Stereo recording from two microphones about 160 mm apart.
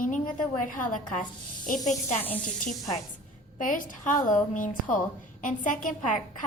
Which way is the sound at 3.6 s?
55° left (ahead or behind).